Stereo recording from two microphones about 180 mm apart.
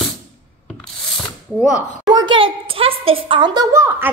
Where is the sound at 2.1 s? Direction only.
25° right (ahead or behind).